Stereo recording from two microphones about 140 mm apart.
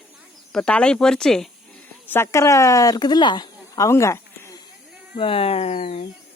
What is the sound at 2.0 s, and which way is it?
A woman's voice, 20° left (ahead or behind).